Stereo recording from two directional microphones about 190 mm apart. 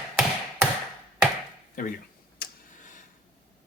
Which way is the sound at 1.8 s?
45° left (ahead or behind).